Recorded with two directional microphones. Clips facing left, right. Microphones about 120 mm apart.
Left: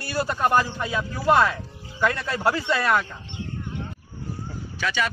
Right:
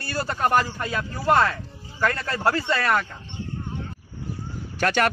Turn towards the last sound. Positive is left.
turn(degrees=-55)  # may be behind; listen again after turning